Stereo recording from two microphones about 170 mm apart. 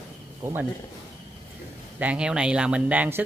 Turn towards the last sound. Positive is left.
turn(degrees=-10)  # may be behind; listen again after turning